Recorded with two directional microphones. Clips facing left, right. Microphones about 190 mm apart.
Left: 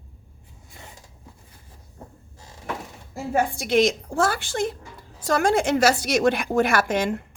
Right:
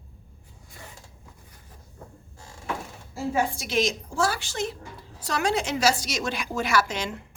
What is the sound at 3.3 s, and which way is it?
A woman's voice, 55° left (ahead or behind).